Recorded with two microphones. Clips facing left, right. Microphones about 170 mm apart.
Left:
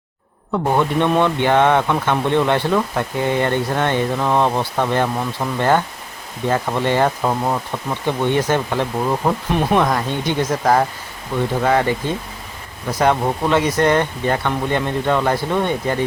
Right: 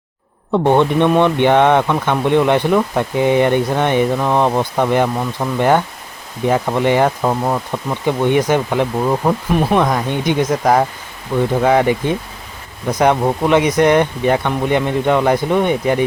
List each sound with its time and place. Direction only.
0.5 s speech: 25° right (ahead or behind)